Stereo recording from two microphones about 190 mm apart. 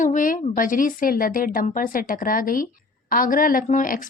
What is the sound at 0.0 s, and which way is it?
A woman's voice, 45° left (ahead or behind).